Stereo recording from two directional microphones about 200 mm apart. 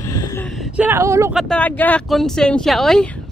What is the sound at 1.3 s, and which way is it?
Speech, 5° left (ahead or behind).